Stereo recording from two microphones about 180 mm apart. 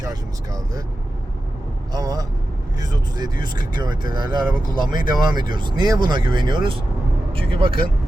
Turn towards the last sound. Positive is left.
turn(degrees=-30)  # may be behind; listen again after turning